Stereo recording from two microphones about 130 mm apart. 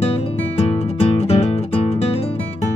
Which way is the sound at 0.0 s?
50° left (ahead or behind).